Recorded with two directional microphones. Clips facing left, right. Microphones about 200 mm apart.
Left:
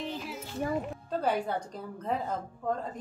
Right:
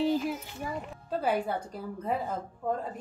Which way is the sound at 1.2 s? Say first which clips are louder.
Right 1 dB; 5° right (ahead or behind).